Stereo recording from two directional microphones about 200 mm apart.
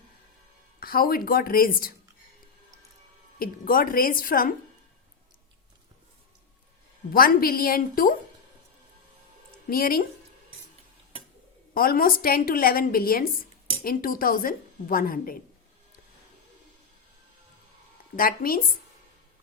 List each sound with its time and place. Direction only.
0.8 s a woman's voice: 45° left (ahead or behind)
3.3 s a woman's voice: 45° left (ahead or behind)
7.1 s a woman's voice: 45° left (ahead or behind)
9.6 s a woman's voice: 45° left (ahead or behind)
11.7 s a woman's voice: 45° left (ahead or behind)
18.2 s a woman's voice: 45° left (ahead or behind)